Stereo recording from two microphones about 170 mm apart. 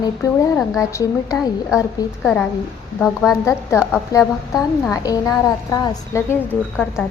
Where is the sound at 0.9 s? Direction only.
20° left (ahead or behind).